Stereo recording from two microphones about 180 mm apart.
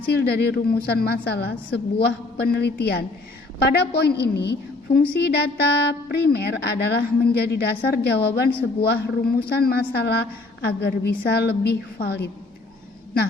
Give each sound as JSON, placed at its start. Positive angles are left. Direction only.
{"t": 0.0, "sound": "a woman's voice", "side_deg": 65}